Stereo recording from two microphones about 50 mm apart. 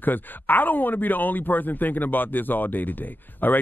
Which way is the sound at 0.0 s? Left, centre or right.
Left.